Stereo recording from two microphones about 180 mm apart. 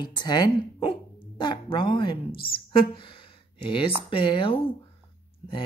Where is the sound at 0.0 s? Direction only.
25° left (ahead or behind).